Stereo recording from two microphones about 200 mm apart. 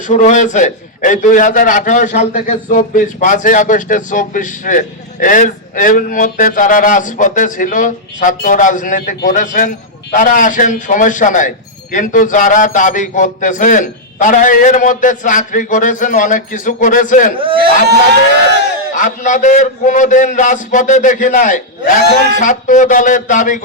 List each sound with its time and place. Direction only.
0.1 s a man's voice: 35° left (ahead or behind)
17.3 s speech: 25° right (ahead or behind)
18.9 s a man's voice: 40° left (ahead or behind)